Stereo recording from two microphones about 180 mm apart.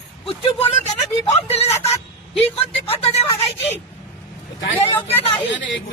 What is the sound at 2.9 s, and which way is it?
Speech, 35° left (ahead or behind).